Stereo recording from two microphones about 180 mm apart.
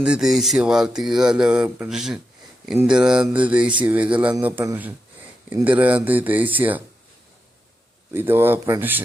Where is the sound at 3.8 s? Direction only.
5° right (ahead or behind).